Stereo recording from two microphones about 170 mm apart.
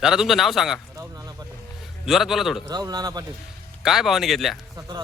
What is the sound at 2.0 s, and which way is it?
Speech, centre (ahead or behind).